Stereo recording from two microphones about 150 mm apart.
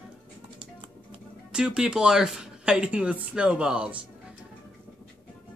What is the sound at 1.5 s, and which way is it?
Speech, 5° right (ahead or behind).